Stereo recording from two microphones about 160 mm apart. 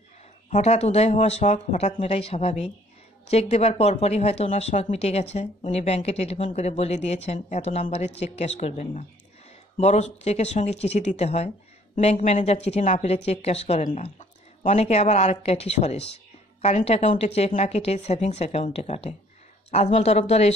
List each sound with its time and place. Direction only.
0.5 s speech: 45° left (ahead or behind)